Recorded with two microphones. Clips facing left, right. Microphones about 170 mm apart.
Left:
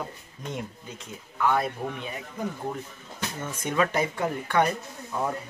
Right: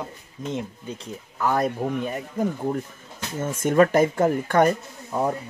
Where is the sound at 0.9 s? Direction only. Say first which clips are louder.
Right 3 dB; 35° right (ahead or behind).